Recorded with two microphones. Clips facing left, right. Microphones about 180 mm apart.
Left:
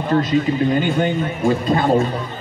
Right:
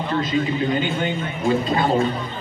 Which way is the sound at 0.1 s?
45° left (ahead or behind).